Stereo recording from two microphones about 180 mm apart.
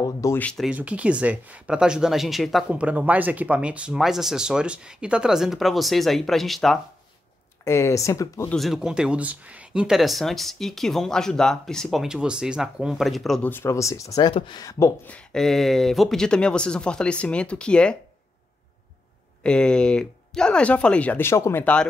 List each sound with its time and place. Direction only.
0.0 s speech: 15° left (ahead or behind)
0.7 s speech: 5° right (ahead or behind)
7.6 s speech: 15° left (ahead or behind)
8.5 s speech: centre (ahead or behind)
19.4 s speech: 5° left (ahead or behind)